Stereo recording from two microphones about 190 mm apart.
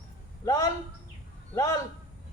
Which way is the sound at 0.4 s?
20° left (ahead or behind).